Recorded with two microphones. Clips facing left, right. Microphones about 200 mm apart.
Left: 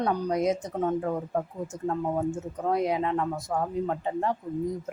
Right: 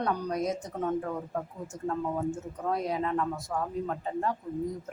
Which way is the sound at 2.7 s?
20° left (ahead or behind).